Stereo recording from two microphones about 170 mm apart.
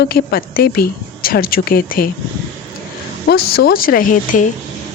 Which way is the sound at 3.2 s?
65° left (ahead or behind).